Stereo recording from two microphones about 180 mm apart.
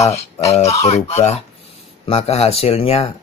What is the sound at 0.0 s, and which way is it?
Speech, 35° left (ahead or behind).